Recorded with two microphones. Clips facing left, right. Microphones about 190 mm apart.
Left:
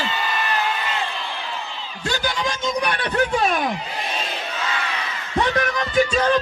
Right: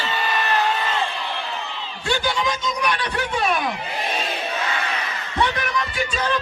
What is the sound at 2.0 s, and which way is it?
Music, 40° left (ahead or behind).